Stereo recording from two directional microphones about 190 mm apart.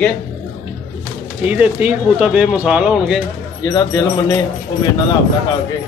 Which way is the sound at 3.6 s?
15° left (ahead or behind).